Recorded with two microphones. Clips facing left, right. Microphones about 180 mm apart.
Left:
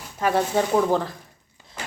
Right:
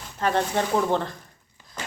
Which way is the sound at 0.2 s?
10° left (ahead or behind).